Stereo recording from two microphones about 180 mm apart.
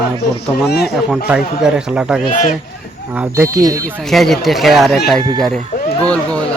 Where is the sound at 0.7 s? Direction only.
65° left (ahead or behind).